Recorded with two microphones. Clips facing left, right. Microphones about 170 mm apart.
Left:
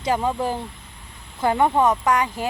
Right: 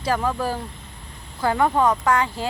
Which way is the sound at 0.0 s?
20° left (ahead or behind).